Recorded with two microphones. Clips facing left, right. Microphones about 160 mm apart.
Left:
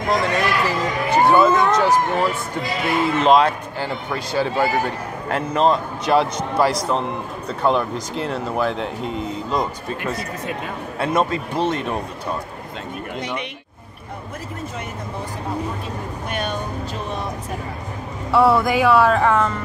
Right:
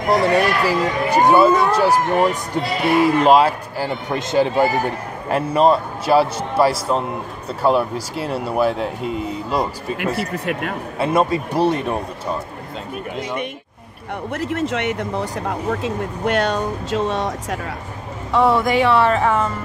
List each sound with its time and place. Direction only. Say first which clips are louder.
0.1 s a man's voice: right 4 dB; 10° right (ahead or behind)
4.1 s a man's voice: right 5 dB; 20° right (ahead or behind)
10.1 s speech: right 4 dB; 70° right (ahead or behind)
11.0 s a man's voice: right 2 dB; 10° right (ahead or behind)
14.3 s speech: right 10 dB; 80° right
18.3 s speech: even; centre (ahead or behind)